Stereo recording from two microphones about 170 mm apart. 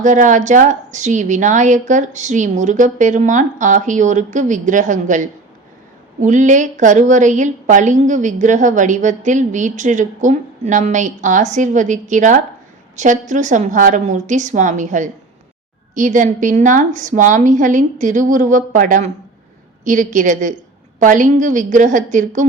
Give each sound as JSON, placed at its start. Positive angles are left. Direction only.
{"t": 0.0, "sound": "a woman's voice", "side_deg": -45}